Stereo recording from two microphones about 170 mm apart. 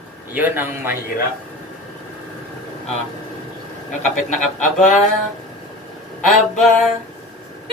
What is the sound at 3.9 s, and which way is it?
Speech, 45° left (ahead or behind).